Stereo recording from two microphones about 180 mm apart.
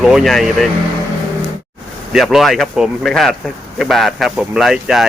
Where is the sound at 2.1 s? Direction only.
Centre (ahead or behind).